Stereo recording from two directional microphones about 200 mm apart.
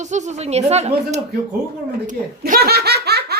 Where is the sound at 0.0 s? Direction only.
35° right (ahead or behind).